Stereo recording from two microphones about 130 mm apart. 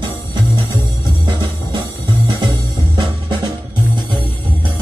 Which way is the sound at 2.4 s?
35° right (ahead or behind).